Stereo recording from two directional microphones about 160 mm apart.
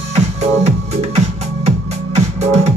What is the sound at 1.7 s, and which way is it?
Music, 40° right (ahead or behind).